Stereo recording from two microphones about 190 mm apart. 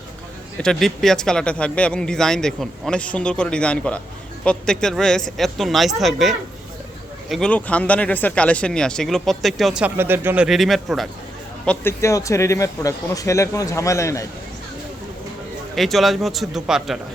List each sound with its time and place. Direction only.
0.6 s a man's voice: centre (ahead or behind)
15.7 s speech: centre (ahead or behind)